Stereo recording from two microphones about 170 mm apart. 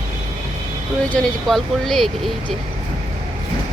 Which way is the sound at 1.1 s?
Centre (ahead or behind).